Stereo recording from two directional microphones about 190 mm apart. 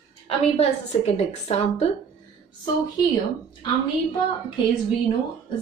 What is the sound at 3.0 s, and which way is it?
Speech, 20° left (ahead or behind).